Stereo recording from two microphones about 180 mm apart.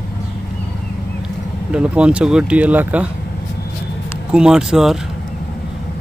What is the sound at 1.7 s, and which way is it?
Speech, 5° right (ahead or behind).